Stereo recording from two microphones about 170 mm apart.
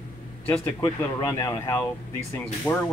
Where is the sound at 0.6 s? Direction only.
15° left (ahead or behind).